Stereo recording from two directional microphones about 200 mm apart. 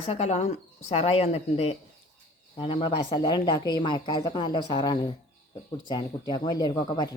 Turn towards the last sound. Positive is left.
turn(degrees=20)  # may be behind; listen again after turning